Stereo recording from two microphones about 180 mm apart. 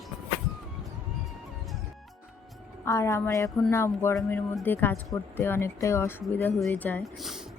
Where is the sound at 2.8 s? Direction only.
15° left (ahead or behind).